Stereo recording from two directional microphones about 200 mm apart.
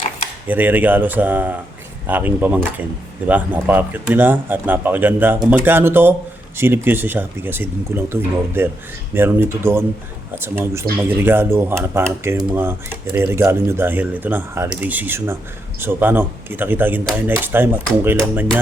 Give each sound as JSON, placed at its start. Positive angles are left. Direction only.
{"t": 0.4, "sound": "speech", "side_deg": -10}